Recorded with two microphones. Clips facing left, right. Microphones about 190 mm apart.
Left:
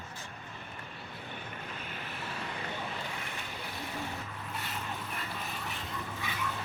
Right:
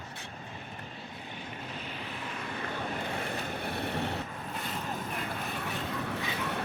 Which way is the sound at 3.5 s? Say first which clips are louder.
Right 5 dB; 60° right (ahead or behind).